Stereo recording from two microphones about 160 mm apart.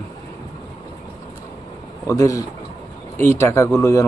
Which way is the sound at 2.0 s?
20° left (ahead or behind).